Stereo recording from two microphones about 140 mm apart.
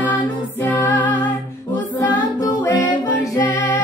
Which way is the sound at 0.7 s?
10° left (ahead or behind).